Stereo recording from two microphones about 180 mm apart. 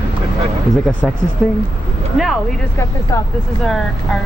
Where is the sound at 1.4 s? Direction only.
5° left (ahead or behind).